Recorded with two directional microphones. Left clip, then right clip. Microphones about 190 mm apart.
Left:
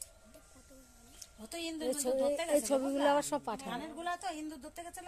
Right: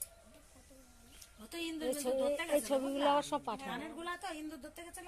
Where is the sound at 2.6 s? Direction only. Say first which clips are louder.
Left 2 dB; 25° left (ahead or behind).